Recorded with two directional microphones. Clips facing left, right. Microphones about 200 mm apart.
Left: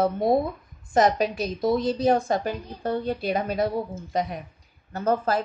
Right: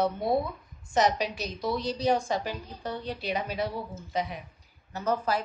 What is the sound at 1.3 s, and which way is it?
A woman's voice, 50° left (ahead or behind).